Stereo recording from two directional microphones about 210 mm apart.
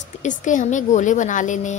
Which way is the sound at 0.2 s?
35° left (ahead or behind).